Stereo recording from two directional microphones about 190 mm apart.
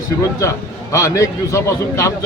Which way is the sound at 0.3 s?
15° left (ahead or behind).